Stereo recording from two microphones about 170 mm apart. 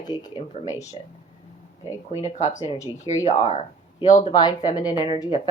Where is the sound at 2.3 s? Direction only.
45° left (ahead or behind).